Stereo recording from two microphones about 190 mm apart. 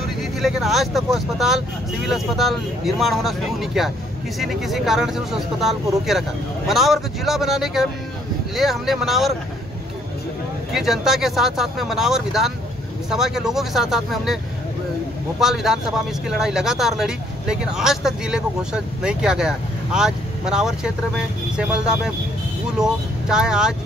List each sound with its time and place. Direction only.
0.4 s speech: centre (ahead or behind)
10.7 s speech: centre (ahead or behind)